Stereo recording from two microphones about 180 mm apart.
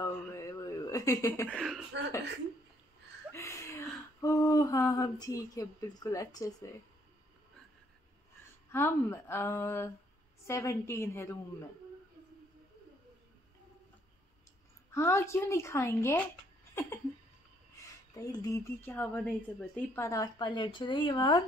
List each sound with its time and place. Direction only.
0.0 s a sound: 15° left (ahead or behind)
1.5 s speech: centre (ahead or behind)
3.3 s a sound: 15° left (ahead or behind)
4.2 s speech: 20° left (ahead or behind)
8.7 s a woman's voice: 15° left (ahead or behind)
14.9 s a woman's voice: 15° left (ahead or behind)
18.1 s speech: 20° left (ahead or behind)